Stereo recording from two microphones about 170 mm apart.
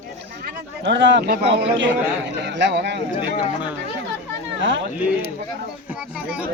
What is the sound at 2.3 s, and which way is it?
Speech, 90° right.